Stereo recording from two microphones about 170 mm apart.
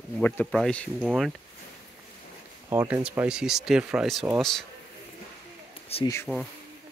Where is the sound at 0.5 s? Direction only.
5° left (ahead or behind).